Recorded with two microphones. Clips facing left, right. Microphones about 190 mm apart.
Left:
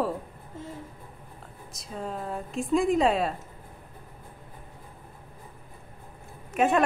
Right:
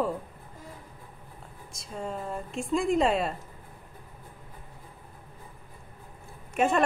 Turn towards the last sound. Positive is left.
turn(degrees=0)  # may be behind; listen again after turning